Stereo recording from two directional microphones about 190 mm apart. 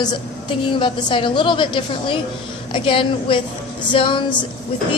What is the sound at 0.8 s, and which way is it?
A woman's voice, 25° left (ahead or behind).